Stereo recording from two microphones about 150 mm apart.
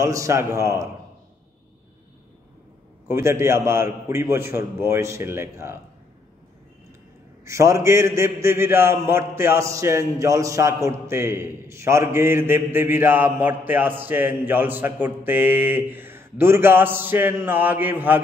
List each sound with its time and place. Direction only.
0.0 s a man's voice: 20° right (ahead or behind)
3.1 s a man's voice: 15° right (ahead or behind)
7.4 s a man's voice: 20° right (ahead or behind)